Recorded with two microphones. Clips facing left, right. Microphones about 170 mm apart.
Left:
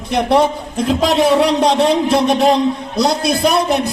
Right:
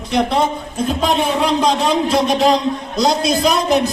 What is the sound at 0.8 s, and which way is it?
A man's voice, 85° left.